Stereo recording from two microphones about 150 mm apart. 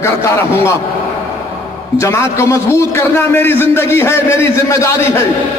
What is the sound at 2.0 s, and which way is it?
A man's voice, 20° left (ahead or behind).